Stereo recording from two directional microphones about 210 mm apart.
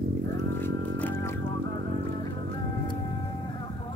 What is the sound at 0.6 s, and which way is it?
Music, 10° left (ahead or behind).